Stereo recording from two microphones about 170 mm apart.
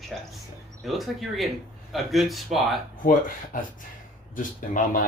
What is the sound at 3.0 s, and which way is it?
Speech, 55° left (ahead or behind).